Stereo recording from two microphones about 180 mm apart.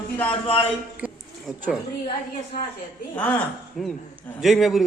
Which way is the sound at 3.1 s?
10° left (ahead or behind).